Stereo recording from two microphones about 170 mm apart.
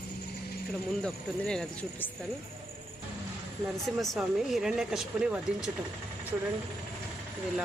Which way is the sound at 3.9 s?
Centre (ahead or behind).